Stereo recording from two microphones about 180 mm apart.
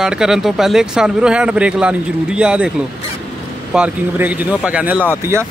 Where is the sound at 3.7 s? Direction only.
5° right (ahead or behind).